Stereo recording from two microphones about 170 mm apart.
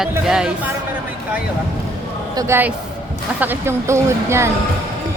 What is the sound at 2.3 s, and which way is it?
Speech, 20° right (ahead or behind).